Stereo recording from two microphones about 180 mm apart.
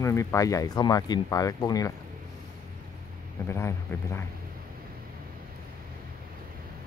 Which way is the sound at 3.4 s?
15° left (ahead or behind).